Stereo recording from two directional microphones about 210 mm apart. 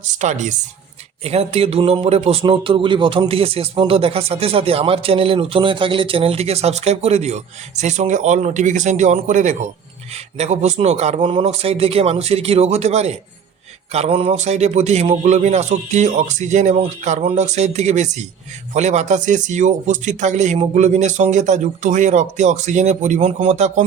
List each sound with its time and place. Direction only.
0.1 s a man's voice: 35° right (ahead or behind)